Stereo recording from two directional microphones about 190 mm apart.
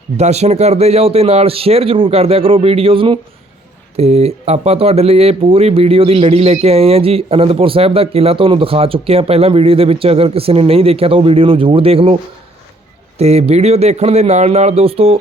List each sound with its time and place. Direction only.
0.2 s speech: 35° right (ahead or behind)
13.1 s speech: 35° right (ahead or behind)